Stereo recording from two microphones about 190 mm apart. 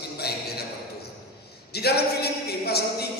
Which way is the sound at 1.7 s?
55° left (ahead or behind).